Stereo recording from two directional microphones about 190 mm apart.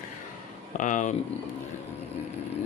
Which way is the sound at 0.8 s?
40° left (ahead or behind).